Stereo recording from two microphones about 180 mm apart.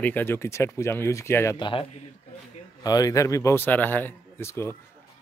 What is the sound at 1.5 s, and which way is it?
A man's voice, 30° left (ahead or behind).